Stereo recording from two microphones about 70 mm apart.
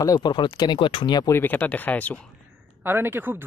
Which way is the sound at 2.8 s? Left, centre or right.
Right.